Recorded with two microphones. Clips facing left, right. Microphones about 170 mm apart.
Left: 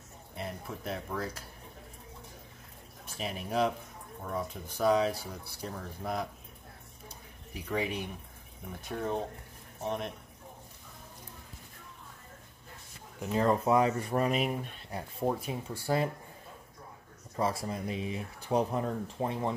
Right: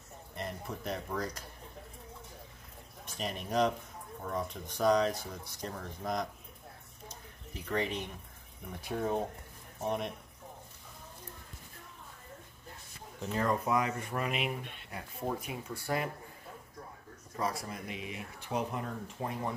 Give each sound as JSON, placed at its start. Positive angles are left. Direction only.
{"t": 0.4, "sound": "speech", "side_deg": 5}
{"t": 3.2, "sound": "speech", "side_deg": 5}
{"t": 7.5, "sound": "speech", "side_deg": 10}
{"t": 8.8, "sound": "speech", "side_deg": -5}
{"t": 13.2, "sound": "speech", "side_deg": 20}
{"t": 17.4, "sound": "speech", "side_deg": 30}